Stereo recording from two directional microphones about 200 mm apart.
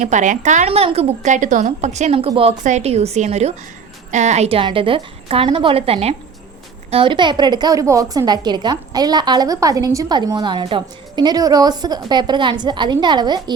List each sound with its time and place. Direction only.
0.0 s a woman's voice: 35° right (ahead or behind); by 13.4 s 20° right (ahead or behind)